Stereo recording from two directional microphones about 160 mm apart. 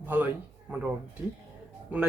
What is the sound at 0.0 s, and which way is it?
Speech, 10° right (ahead or behind).